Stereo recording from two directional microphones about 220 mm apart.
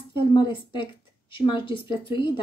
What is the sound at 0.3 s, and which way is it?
Speech, 20° left (ahead or behind).